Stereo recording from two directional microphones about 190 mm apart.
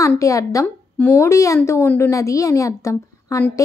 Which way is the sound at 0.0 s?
15° left (ahead or behind).